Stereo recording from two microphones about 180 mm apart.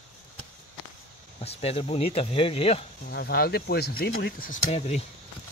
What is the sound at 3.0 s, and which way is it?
Speech, 65° left (ahead or behind).